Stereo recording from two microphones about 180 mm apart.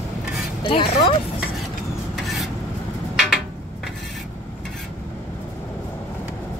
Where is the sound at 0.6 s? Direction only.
30° left (ahead or behind).